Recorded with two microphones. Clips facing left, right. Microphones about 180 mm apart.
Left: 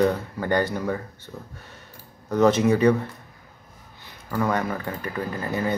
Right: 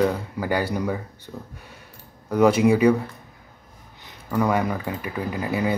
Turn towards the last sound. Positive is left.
turn(degrees=-10)  # may be behind; listen again after turning